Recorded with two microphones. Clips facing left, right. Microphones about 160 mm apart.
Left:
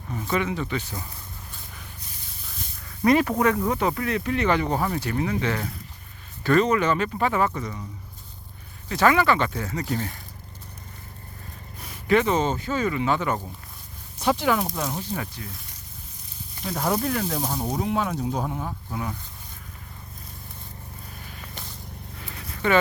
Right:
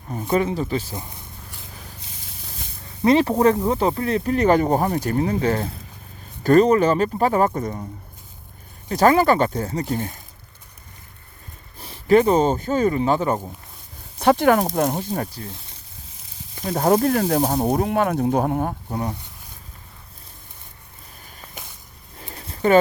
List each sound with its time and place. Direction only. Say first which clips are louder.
0.1 s speech: right 5 dB; 35° right (ahead or behind)
2.8 s speech: right 3 dB; 25° right (ahead or behind); by 7.9 s 45° right (ahead or behind)
8.9 s speech: right 4 dB; 40° right (ahead or behind); by 10.2 s 25° right (ahead or behind)
11.8 s speech: right 6 dB; 35° right (ahead or behind)
14.2 s speech: right 7 dB; 55° right (ahead or behind); by 15.5 s 35° right (ahead or behind)
16.6 s speech: right 7 dB; 45° right (ahead or behind)
18.9 s speech: right 5 dB; 35° right (ahead or behind)
22.2 s a sound: right 6 dB; 35° right (ahead or behind)